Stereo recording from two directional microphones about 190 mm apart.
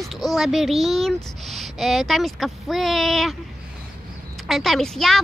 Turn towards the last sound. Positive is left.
turn(degrees=0)  # may be behind; listen again after turning